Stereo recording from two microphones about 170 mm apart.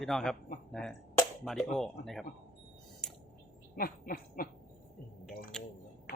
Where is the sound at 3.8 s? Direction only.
60° left (ahead or behind).